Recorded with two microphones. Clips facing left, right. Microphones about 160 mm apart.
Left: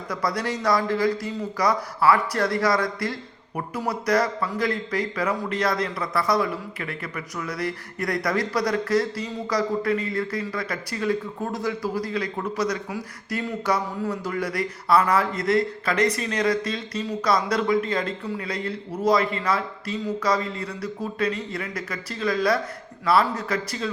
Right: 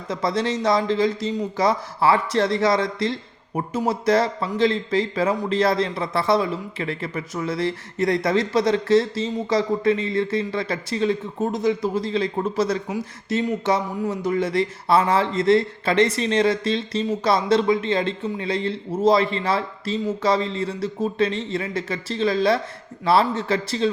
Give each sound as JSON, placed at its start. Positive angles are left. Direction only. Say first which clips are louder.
{"t": 0.1, "sound": "a man's voice", "louder": "right 4 dB", "side_deg": -25}